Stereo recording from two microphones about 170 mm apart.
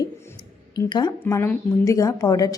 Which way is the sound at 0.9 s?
25° left (ahead or behind).